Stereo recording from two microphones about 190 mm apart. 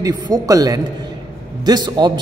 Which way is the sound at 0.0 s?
20° right (ahead or behind).